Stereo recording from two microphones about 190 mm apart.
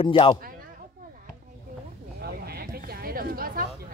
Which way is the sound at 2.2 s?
55° right (ahead or behind).